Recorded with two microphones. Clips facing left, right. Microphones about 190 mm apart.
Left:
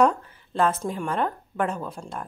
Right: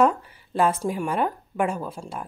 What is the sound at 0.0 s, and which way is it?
A woman's voice, 10° right (ahead or behind).